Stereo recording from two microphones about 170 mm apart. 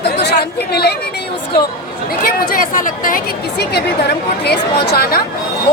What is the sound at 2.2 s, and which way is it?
A woman's voice, 55° left (ahead or behind).